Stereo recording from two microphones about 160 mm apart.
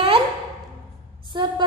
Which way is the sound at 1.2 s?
30° right (ahead or behind).